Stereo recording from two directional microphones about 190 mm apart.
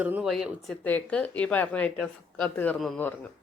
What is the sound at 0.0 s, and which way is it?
Speech, 5° right (ahead or behind).